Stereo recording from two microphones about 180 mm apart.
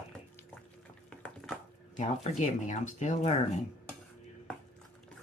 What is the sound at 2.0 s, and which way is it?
Speech, 40° left (ahead or behind).